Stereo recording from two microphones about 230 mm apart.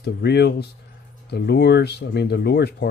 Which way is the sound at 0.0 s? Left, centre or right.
Left.